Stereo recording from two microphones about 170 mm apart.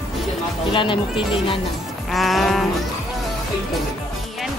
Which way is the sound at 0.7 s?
30° left (ahead or behind).